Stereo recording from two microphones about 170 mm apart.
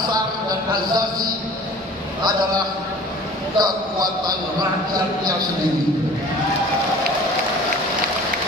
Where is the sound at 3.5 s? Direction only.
25° right (ahead or behind).